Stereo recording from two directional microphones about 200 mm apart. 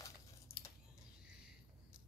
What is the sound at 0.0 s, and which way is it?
Typing, 15° left (ahead or behind).